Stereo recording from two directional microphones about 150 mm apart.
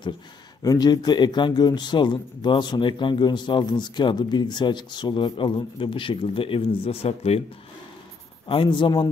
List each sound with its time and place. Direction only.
0.6 s speech: 25° left (ahead or behind); by 7.4 s 45° left (ahead or behind)
8.5 s speech: 35° left (ahead or behind)